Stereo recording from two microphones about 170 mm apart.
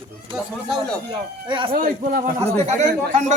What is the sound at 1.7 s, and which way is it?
Speech, 55° right (ahead or behind).